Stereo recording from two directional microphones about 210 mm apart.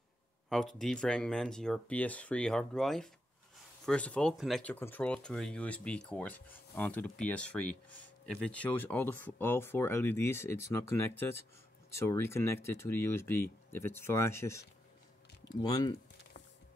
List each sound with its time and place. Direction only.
0.5 s speech: centre (ahead or behind); by 16.0 s 20° left (ahead or behind)